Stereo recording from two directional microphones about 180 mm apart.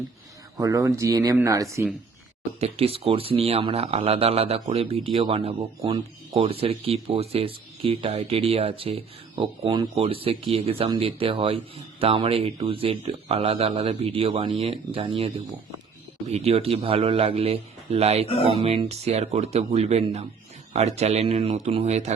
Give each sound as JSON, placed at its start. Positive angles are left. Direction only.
{"t": 0.5, "sound": "speech", "side_deg": -20}
{"t": 2.6, "sound": "speech", "side_deg": -35}